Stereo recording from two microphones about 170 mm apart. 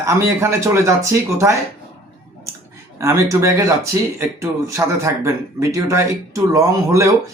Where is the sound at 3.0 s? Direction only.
15° right (ahead or behind).